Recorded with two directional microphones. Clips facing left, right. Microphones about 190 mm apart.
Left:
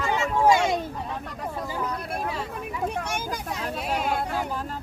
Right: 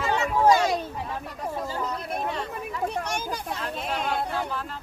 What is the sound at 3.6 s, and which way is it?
Speech, 10° left (ahead or behind).